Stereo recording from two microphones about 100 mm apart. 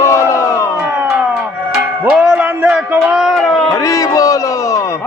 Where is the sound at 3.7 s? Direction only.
35° left (ahead or behind).